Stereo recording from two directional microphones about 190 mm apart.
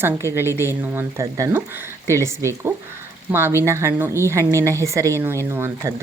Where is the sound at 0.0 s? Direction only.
15° right (ahead or behind).